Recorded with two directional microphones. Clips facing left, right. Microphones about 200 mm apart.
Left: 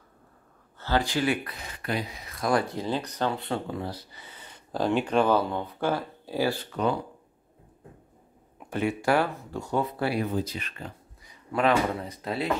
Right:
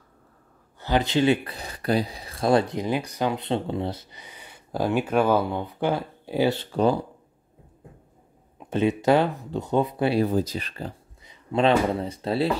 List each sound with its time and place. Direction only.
0.7 s speech: 20° right (ahead or behind)
8.5 s speech: 20° right (ahead or behind)
10.1 s speech: 40° right (ahead or behind)